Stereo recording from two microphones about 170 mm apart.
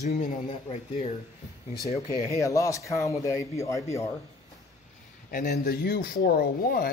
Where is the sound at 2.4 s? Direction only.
20° left (ahead or behind).